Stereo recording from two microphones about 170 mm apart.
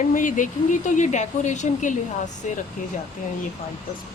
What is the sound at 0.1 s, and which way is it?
Speech, 50° left (ahead or behind).